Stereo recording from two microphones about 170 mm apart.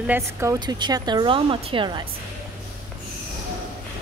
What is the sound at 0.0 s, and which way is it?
Speech, 15° right (ahead or behind).